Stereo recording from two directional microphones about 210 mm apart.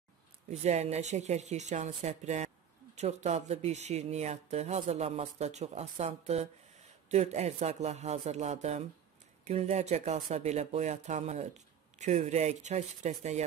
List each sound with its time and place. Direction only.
0.5 s speech: 30° right (ahead or behind)